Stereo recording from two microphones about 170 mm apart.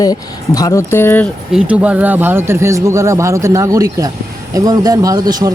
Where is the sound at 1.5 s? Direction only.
5° right (ahead or behind).